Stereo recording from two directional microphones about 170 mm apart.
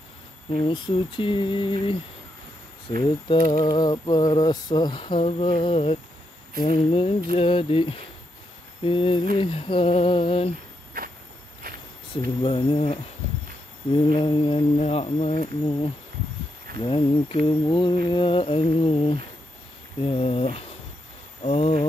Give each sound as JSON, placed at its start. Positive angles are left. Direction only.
{"t": 0.5, "sound": "a sound", "side_deg": 30}
{"t": 3.0, "sound": "a sound", "side_deg": 30}
{"t": 6.6, "sound": "humming", "side_deg": 35}
{"t": 10.9, "sound": "walk", "side_deg": -60}
{"t": 12.1, "sound": "humming", "side_deg": 30}
{"t": 16.8, "sound": "humming", "side_deg": 30}